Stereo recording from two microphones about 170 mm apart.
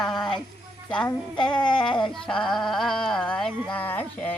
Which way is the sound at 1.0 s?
30° left (ahead or behind).